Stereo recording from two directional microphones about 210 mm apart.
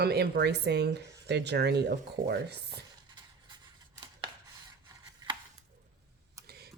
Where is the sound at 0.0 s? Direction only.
50° right (ahead or behind).